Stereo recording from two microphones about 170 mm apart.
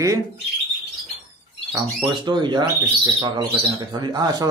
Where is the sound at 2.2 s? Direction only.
25° right (ahead or behind).